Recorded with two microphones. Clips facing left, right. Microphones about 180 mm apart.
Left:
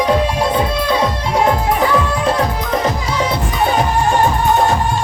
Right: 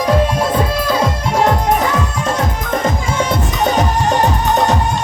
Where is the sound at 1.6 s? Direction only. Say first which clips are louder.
Left 1 dB; 45° right (ahead or behind).